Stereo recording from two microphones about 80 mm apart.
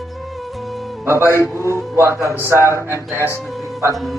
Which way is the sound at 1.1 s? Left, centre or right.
Right.